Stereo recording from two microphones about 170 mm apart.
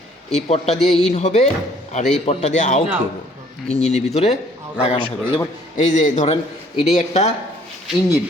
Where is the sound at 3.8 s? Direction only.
40° left (ahead or behind).